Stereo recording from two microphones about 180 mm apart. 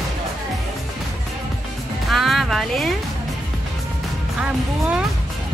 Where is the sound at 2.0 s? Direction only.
Centre (ahead or behind).